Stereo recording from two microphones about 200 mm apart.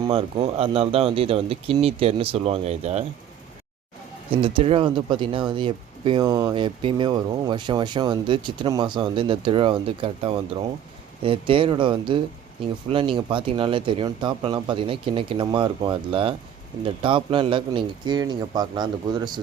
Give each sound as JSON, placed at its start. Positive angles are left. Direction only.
{"t": 0.0, "sound": "speech", "side_deg": -25}
{"t": 4.3, "sound": "speech", "side_deg": -25}